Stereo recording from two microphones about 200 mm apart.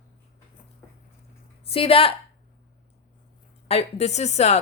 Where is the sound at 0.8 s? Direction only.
10° left (ahead or behind).